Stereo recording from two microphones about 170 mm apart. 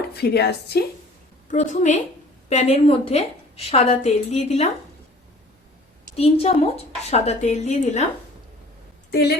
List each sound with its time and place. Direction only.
0.1 s a woman's voice: 70° left (ahead or behind)
1.5 s a woman's voice: 45° left (ahead or behind)
6.1 s a woman's voice: 35° left (ahead or behind)